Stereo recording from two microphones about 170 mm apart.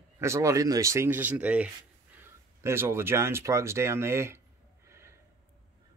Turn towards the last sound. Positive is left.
turn(degrees=-15)  # may be behind; listen again after turning